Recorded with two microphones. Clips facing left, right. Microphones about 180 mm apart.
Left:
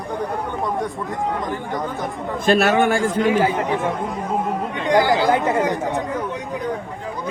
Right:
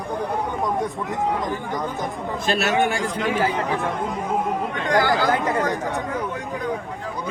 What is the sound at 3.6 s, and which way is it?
Speech, 15° left (ahead or behind).